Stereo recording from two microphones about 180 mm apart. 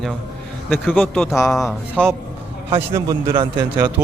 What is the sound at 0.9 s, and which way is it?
Speech, 10° left (ahead or behind).